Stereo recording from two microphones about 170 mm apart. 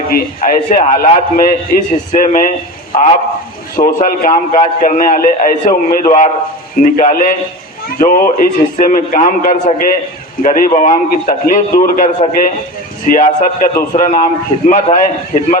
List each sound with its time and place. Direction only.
0.1 s a man's voice: 60° left (ahead or behind)
2.9 s speech: 35° left (ahead or behind)
3.8 s a man's voice: 55° left (ahead or behind)